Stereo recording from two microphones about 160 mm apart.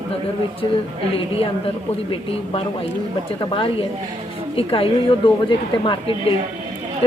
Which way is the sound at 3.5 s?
35° left (ahead or behind).